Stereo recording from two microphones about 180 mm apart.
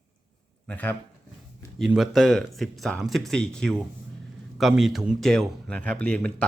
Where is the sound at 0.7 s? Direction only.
10° left (ahead or behind).